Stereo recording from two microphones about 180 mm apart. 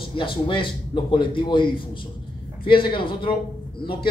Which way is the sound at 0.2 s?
30° left (ahead or behind).